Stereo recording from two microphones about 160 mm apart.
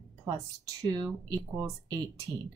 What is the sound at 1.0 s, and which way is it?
Speech, 25° right (ahead or behind).